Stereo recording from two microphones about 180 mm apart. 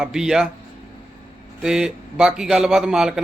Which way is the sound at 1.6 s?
5° right (ahead or behind).